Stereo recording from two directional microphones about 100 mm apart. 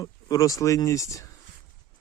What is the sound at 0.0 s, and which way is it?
Speech, 35° left (ahead or behind).